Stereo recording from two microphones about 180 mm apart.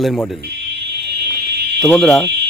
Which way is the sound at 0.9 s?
65° right (ahead or behind).